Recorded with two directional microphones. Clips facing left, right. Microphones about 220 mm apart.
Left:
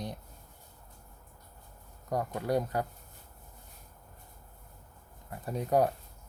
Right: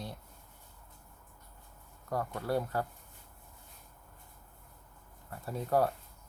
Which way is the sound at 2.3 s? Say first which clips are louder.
Left 3 dB; 15° left (ahead or behind).